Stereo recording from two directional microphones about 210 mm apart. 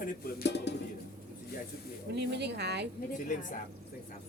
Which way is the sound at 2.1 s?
55° right (ahead or behind).